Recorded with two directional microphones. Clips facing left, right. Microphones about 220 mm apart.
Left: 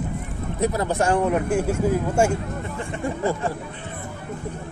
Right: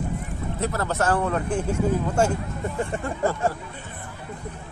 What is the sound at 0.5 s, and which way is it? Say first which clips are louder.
Speech: left 4 dB; 15° left (ahead or behind).